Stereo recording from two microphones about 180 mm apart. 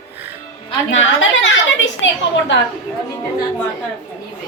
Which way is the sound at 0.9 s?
90° left.